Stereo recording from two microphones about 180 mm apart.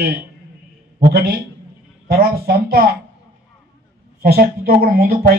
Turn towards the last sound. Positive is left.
turn(degrees=-55)  # may be behind; listen again after turning